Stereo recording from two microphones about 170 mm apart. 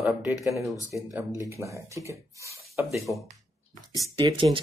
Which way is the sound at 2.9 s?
Centre (ahead or behind).